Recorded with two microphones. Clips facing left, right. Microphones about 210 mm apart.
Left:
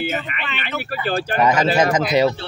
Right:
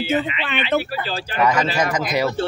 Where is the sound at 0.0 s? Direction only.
55° left (ahead or behind).